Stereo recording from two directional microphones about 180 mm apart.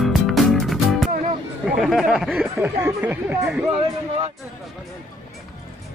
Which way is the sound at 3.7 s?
30° right (ahead or behind).